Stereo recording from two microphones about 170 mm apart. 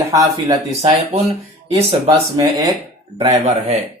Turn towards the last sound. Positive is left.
turn(degrees=-40)  # may be behind; listen again after turning